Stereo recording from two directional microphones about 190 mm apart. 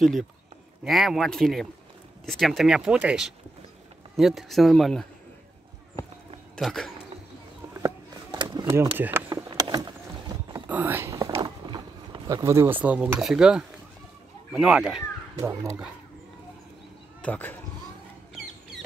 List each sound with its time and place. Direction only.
0.0 s speech: centre (ahead or behind)
6.5 s speech: centre (ahead or behind)
7.7 s a sound: 20° right (ahead or behind)
8.5 s speech: 15° right (ahead or behind)
9.3 s vehicle: 20° right (ahead or behind)
10.7 s a sound: 10° right (ahead or behind)
12.3 s speech: 15° right (ahead or behind)
15.3 s speech: 15° right (ahead or behind)
17.2 s speech: 10° left (ahead or behind)